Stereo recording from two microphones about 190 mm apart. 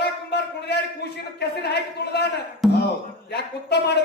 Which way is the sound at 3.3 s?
60° left (ahead or behind).